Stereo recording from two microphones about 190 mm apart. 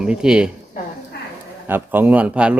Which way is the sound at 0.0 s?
5° right (ahead or behind).